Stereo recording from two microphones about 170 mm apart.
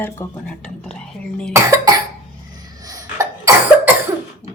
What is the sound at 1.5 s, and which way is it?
Cough, 20° right (ahead or behind).